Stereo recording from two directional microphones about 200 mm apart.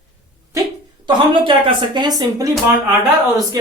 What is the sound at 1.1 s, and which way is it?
A woman's voice, 25° right (ahead or behind).